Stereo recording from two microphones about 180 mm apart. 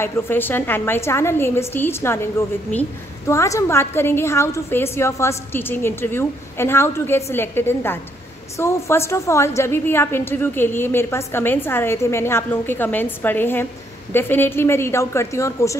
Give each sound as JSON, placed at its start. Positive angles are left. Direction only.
{"t": 0.0, "sound": "a woman's voice", "side_deg": 10}